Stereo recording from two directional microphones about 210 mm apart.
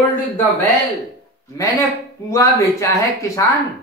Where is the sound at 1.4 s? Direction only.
15° left (ahead or behind).